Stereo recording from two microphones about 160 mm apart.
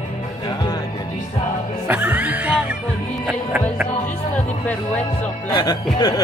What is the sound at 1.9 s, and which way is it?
Music, 10° right (ahead or behind).